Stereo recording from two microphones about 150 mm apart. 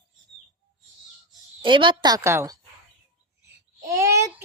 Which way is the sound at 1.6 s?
35° right (ahead or behind).